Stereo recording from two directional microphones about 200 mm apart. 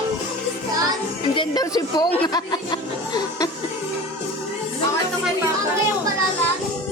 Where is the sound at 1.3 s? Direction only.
20° left (ahead or behind).